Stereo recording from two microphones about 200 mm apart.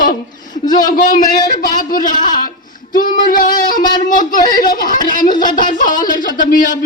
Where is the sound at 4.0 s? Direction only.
40° left (ahead or behind).